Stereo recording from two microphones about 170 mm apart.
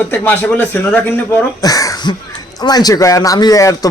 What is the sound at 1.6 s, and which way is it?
A man's voice, 20° left (ahead or behind).